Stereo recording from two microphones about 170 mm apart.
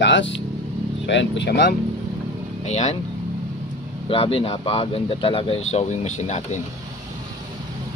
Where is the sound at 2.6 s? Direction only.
40° left (ahead or behind).